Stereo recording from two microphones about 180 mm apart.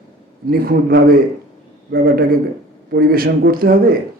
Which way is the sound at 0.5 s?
55° right (ahead or behind).